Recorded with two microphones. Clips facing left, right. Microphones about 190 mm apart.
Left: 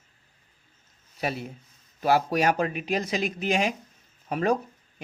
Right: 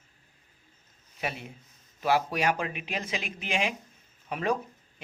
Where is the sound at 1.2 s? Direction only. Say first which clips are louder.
Left 5 dB; 40° left (ahead or behind).